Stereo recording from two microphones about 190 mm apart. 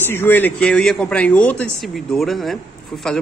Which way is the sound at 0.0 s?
10° left (ahead or behind).